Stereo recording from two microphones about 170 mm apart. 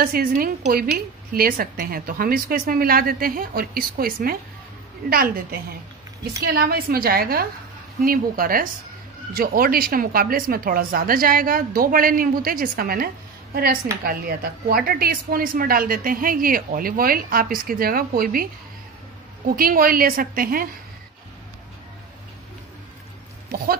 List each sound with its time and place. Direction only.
0.0 s speech: 60° right (ahead or behind)
19.5 s speech: 60° right (ahead or behind)
23.5 s speech: 60° right (ahead or behind)